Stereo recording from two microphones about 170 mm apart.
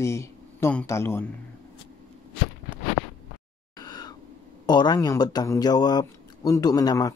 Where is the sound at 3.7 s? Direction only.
25° left (ahead or behind).